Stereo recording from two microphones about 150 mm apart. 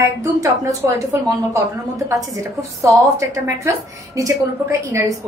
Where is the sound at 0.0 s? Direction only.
20° right (ahead or behind).